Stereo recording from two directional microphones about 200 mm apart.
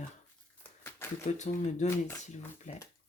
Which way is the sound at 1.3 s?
35° left (ahead or behind).